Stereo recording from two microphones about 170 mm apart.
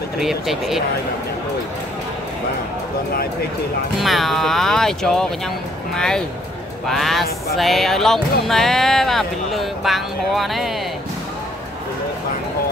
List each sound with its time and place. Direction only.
0.2 s speech: centre (ahead or behind)
4.0 s speech: centre (ahead or behind)